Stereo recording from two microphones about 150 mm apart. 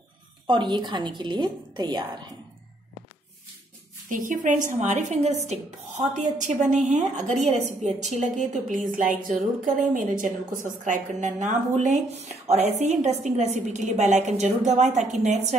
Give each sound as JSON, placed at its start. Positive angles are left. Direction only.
{"t": 0.5, "sound": "a woman's voice", "side_deg": -30}
{"t": 4.1, "sound": "a woman's voice", "side_deg": -60}